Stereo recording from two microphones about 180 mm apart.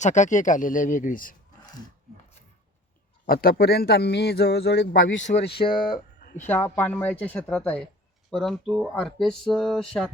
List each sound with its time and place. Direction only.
0.0 s speech: 40° left (ahead or behind)
3.2 s speech: 55° left (ahead or behind); by 5.2 s 85° left
5.6 s speech: 40° left (ahead or behind)
6.5 s speech: 10° left (ahead or behind)